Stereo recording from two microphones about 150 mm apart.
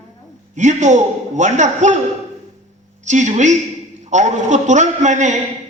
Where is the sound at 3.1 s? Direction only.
50° right (ahead or behind).